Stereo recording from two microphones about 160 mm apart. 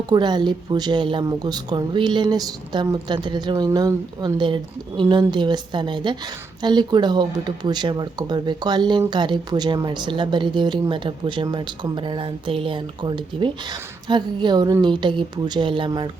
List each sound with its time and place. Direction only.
0.1 s speech: 25° right (ahead or behind)